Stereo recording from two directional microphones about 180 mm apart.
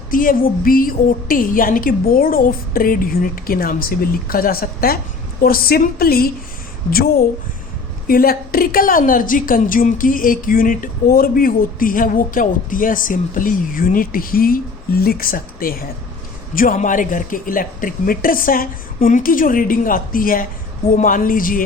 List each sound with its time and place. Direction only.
0.1 s a woman's voice: 50° left (ahead or behind)
8.0 s a woman's voice: 55° left (ahead or behind)